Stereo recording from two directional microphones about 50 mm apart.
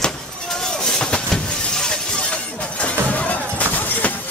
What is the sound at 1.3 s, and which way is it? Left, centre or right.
Vehicle, centre.